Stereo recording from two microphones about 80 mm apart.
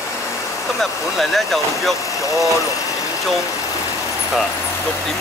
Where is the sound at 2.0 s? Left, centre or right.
Left.